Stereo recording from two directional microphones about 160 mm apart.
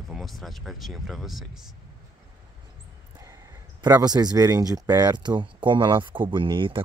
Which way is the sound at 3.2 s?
20° right (ahead or behind).